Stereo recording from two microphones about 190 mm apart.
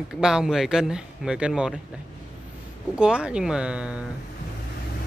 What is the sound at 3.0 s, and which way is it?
Speech, 5° right (ahead or behind).